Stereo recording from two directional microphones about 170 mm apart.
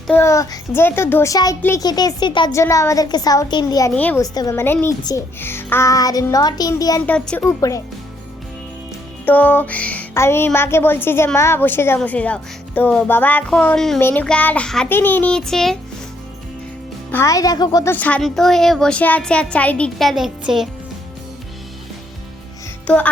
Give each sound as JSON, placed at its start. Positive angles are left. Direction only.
{"t": 0.1, "sound": "a child's voice", "side_deg": 15}
{"t": 3.9, "sound": "speech", "side_deg": 10}
{"t": 4.2, "sound": "a child's voice", "side_deg": 20}
{"t": 7.0, "sound": "speech", "side_deg": 10}
{"t": 9.2, "sound": "speech", "side_deg": 10}
{"t": 17.1, "sound": "a child's voice", "side_deg": 15}
{"t": 17.9, "sound": "speech", "side_deg": 10}